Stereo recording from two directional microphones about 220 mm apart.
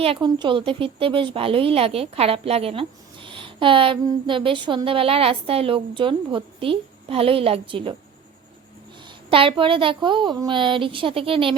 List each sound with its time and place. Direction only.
0.0 s speech: 25° right (ahead or behind)
9.3 s speech: 25° right (ahead or behind)